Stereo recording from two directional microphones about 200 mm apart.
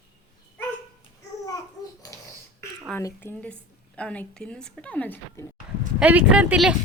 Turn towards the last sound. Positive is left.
turn(degrees=-5)  # may be behind; listen again after turning